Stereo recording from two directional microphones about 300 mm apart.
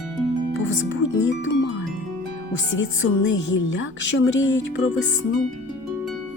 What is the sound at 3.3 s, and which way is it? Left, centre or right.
Speech, left.